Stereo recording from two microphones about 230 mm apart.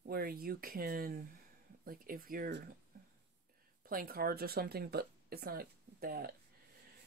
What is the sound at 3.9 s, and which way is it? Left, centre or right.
Speech, right.